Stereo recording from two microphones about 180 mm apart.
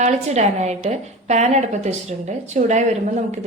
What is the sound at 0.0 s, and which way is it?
A woman's voice, 40° right (ahead or behind).